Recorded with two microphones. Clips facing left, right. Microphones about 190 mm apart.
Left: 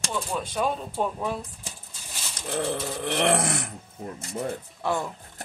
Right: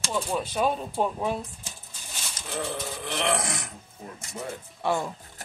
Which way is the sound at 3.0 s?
60° left (ahead or behind).